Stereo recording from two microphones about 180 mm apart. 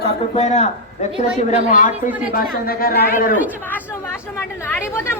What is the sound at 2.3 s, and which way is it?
A man's voice, 55° left (ahead or behind).